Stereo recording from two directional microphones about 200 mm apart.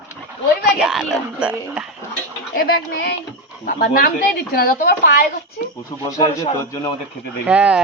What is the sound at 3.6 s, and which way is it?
Speech, 45° left (ahead or behind).